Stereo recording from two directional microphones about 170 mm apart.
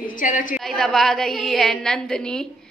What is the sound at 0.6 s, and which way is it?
A woman's voice, centre (ahead or behind).